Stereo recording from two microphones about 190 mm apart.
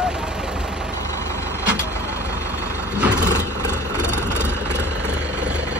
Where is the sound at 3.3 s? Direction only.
15° left (ahead or behind).